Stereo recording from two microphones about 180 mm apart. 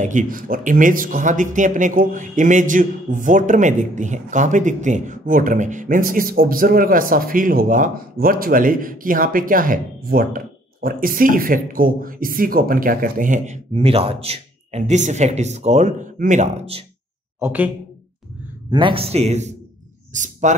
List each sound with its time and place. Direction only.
0.0 s speech: 45° right (ahead or behind)
17.4 s speech: 10° right (ahead or behind)
18.7 s a man's voice: 30° right (ahead or behind)
20.1 s a sound: 45° right (ahead or behind)